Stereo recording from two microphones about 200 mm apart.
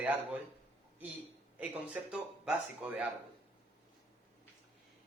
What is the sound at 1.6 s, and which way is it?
A man's voice, 5° right (ahead or behind).